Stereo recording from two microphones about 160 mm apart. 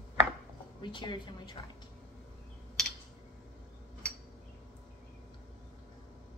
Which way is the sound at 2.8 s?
5° left (ahead or behind).